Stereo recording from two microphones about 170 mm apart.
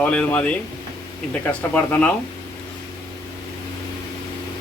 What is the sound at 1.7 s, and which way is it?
Speech, 10° left (ahead or behind).